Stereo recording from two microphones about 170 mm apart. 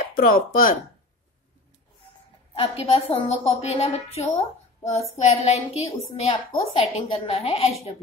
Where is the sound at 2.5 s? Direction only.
35° left (ahead or behind).